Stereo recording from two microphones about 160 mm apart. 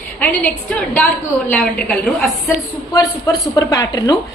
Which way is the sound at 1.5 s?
5° left (ahead or behind).